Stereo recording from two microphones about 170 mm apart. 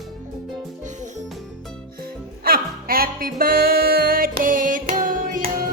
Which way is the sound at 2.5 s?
60° right (ahead or behind).